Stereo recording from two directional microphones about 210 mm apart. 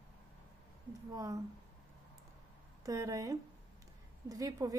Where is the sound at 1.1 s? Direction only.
15° right (ahead or behind).